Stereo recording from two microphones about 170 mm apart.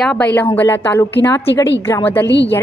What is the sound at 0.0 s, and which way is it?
A woman's voice, 5° left (ahead or behind).